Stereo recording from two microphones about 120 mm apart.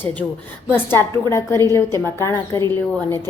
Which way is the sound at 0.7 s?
20° left (ahead or behind).